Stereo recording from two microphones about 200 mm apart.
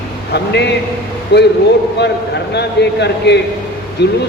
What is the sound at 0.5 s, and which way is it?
Speech, 55° left (ahead or behind).